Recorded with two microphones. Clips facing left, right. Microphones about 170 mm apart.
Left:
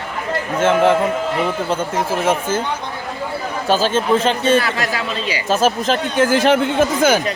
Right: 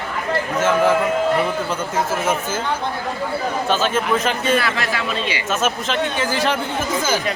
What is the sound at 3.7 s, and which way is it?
Speech, 35° left (ahead or behind).